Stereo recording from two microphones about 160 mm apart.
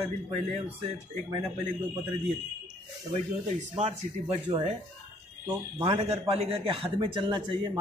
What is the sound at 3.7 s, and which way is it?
A man's voice, 40° right (ahead or behind).